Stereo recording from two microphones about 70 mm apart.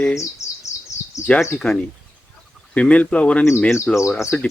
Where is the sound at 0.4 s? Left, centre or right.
Left.